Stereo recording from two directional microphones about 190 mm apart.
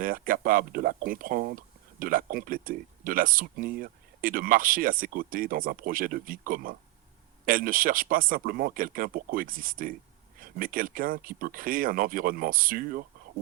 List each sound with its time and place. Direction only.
0.0 s speech: 50° right (ahead or behind)